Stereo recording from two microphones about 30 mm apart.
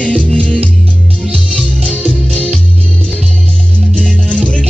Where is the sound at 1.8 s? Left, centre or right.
Right.